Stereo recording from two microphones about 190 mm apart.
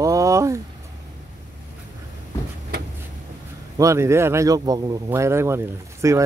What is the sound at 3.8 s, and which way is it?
Speech, 15° right (ahead or behind).